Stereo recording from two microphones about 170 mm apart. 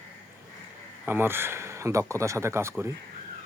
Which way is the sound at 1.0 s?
15° right (ahead or behind).